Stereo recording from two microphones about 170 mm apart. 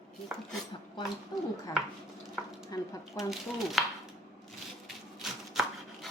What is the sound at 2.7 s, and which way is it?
Speech, 20° left (ahead or behind).